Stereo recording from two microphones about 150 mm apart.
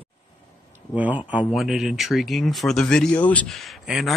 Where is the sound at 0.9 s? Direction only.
10° right (ahead or behind).